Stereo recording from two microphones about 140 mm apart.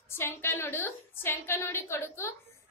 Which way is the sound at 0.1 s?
15° left (ahead or behind).